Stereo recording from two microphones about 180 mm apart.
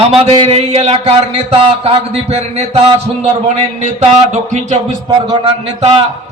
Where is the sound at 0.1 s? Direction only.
35° right (ahead or behind).